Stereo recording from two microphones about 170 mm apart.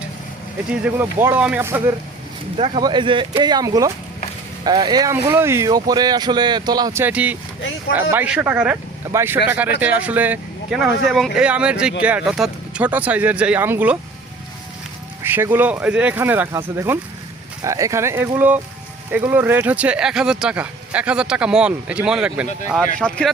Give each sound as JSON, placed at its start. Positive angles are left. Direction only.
{"t": 0.8, "sound": "speech", "side_deg": -10}
{"t": 2.6, "sound": "speech", "side_deg": -30}
{"t": 7.0, "sound": "speech", "side_deg": -10}
{"t": 15.2, "sound": "speech", "side_deg": -15}
{"t": 23.0, "sound": "speech", "side_deg": 5}